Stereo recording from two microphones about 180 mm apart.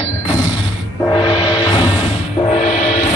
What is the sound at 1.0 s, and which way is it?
Gong, 25° left (ahead or behind).